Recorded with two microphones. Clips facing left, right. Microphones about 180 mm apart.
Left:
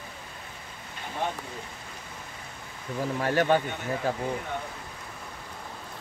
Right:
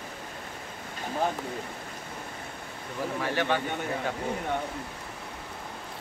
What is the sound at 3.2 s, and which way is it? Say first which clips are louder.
Speech: left 5 dB; 45° left (ahead or behind).